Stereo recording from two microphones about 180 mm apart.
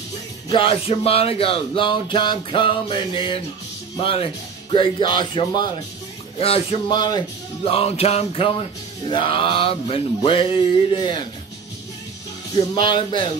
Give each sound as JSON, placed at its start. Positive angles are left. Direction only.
{"t": 0.5, "sound": "music", "side_deg": 30}
{"t": 6.3, "sound": "speech", "side_deg": 30}
{"t": 9.1, "sound": "music", "side_deg": 30}
{"t": 12.7, "sound": "music", "side_deg": 25}